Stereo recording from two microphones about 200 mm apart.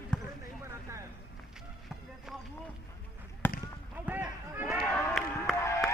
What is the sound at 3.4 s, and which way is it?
Basketball bounce, 10° left (ahead or behind).